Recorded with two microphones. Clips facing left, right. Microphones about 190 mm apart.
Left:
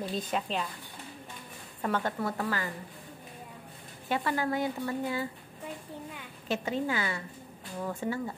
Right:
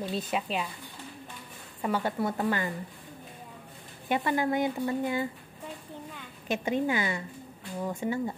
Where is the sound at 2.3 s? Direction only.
20° right (ahead or behind).